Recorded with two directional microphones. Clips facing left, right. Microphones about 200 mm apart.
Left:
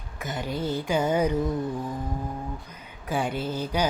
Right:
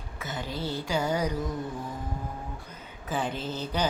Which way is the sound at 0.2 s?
15° left (ahead or behind).